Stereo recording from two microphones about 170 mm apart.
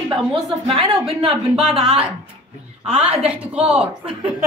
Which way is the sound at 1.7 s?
35° right (ahead or behind).